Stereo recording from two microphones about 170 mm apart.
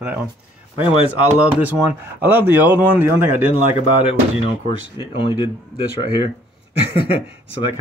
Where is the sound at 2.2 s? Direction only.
10° right (ahead or behind).